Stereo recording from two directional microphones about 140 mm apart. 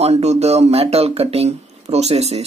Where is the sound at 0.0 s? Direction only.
50° right (ahead or behind).